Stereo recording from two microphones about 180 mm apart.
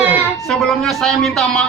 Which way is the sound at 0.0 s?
10° right (ahead or behind).